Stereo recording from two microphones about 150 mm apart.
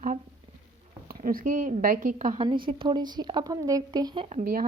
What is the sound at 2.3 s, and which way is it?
A woman's voice, 35° right (ahead or behind).